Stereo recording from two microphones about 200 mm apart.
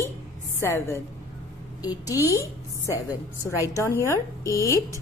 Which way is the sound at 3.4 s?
15° left (ahead or behind).